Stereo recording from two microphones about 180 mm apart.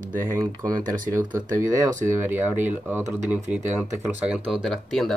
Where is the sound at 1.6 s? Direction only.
15° right (ahead or behind).